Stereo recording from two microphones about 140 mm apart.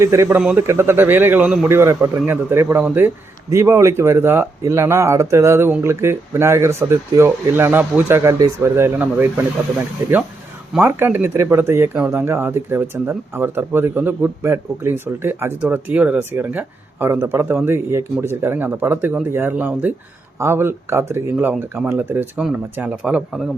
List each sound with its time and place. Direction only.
0.0 s speech: 20° right (ahead or behind); by 23.5 s 5° right (ahead or behind)